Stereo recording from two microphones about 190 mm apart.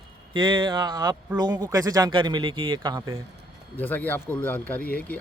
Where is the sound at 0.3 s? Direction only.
25° right (ahead or behind).